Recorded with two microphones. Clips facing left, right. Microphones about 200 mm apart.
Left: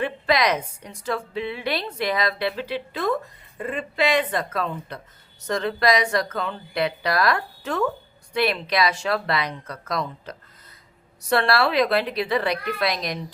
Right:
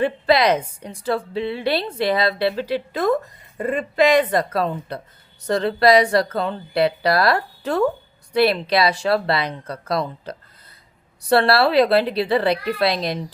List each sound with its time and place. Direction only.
0.0 s a woman's voice: 30° right (ahead or behind)